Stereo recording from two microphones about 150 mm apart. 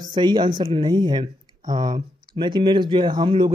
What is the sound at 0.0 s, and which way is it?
Speech, 30° right (ahead or behind).